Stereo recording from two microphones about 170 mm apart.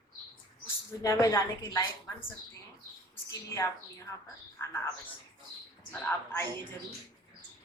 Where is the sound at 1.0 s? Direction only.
20° left (ahead or behind).